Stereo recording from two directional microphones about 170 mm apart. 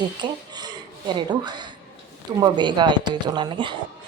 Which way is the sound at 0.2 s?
25° right (ahead or behind).